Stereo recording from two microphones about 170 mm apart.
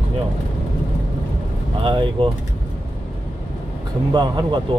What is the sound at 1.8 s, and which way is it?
Speech, 30° right (ahead or behind).